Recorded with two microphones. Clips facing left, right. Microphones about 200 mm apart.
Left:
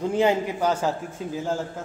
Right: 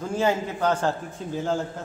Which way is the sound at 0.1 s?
15° left (ahead or behind).